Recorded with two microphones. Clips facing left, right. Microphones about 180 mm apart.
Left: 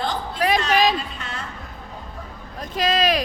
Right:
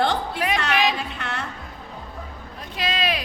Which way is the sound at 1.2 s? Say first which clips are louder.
Right 3 dB; 65° right (ahead or behind).